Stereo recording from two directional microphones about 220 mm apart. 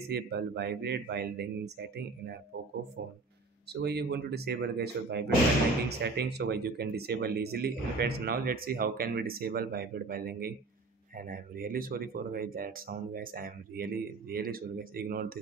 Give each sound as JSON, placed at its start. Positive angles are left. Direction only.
{"t": 0.1, "sound": "speech", "side_deg": -45}
{"t": 3.7, "sound": "speech", "side_deg": -50}